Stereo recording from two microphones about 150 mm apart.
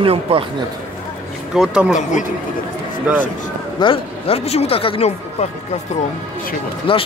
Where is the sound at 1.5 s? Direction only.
5° right (ahead or behind).